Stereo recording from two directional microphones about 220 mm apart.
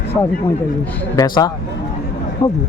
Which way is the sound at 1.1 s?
15° left (ahead or behind).